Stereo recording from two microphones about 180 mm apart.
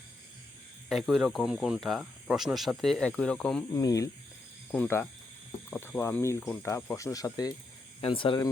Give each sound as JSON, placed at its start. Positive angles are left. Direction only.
{"t": 0.9, "sound": "speech", "side_deg": 0}
{"t": 3.7, "sound": "speech", "side_deg": 20}